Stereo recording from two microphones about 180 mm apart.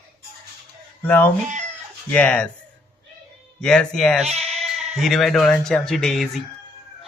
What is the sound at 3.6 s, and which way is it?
Speech, 5° left (ahead or behind).